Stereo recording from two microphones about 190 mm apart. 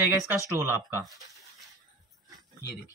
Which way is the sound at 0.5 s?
15° right (ahead or behind).